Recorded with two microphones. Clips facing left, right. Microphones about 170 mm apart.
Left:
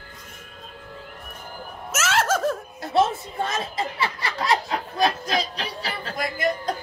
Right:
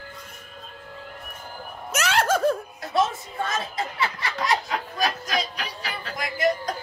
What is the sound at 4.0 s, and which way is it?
Snicker, 30° left (ahead or behind).